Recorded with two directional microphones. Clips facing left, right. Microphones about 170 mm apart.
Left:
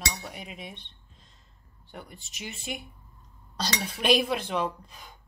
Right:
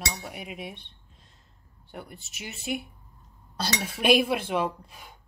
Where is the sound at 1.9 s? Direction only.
5° right (ahead or behind).